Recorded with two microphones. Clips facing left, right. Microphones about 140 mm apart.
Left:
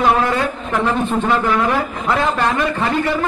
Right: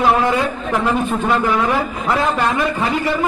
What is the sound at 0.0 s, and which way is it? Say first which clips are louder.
A man's voice: right 1 dB; 10° right (ahead or behind).